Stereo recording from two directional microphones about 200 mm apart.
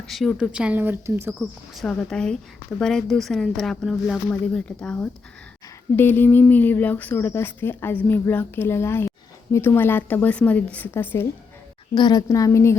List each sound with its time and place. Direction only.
0.1 s speech: centre (ahead or behind)
1.4 s speech: centre (ahead or behind)